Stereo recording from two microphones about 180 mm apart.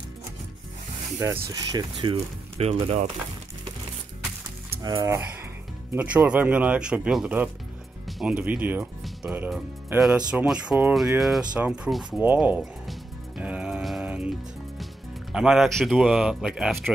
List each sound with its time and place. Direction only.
1.2 s speech: 20° right (ahead or behind); by 3.1 s 35° right (ahead or behind)
4.8 s speech: 20° right (ahead or behind)
5.9 s speech: 10° right (ahead or behind)
13.4 s music: 5° right (ahead or behind)
15.3 s speech: 5° right (ahead or behind)